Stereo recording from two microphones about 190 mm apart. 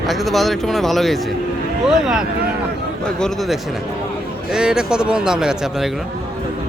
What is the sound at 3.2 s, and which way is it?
Speech, centre (ahead or behind).